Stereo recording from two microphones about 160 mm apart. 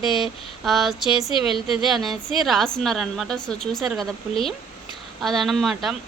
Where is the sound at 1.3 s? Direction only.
35° left (ahead or behind).